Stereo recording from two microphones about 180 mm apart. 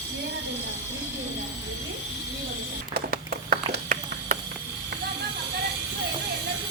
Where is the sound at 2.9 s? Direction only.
55° right (ahead or behind).